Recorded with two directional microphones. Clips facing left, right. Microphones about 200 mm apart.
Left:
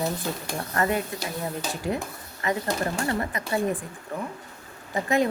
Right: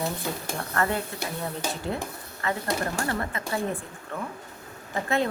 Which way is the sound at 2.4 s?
20° left (ahead or behind).